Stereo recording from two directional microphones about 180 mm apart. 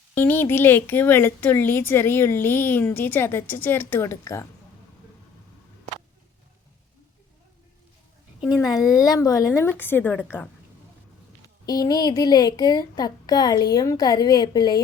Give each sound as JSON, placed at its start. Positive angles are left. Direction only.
{"t": 0.1, "sound": "speech", "side_deg": 10}
{"t": 8.8, "sound": "a woman's voice", "side_deg": 0}
{"t": 9.0, "sound": "speech", "side_deg": 20}
{"t": 11.4, "sound": "a woman's voice", "side_deg": 20}